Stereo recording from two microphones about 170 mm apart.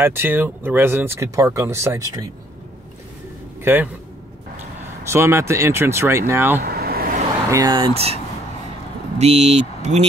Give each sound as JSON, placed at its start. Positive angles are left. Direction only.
{"t": 0.0, "sound": "speech", "side_deg": -15}
{"t": 3.6, "sound": "speech", "side_deg": -10}
{"t": 5.0, "sound": "speech", "side_deg": -15}
{"t": 6.6, "sound": "vehicle", "side_deg": -65}
{"t": 7.5, "sound": "speech", "side_deg": -25}
{"t": 7.9, "sound": "speech", "side_deg": -35}
{"t": 9.2, "sound": "speech", "side_deg": -40}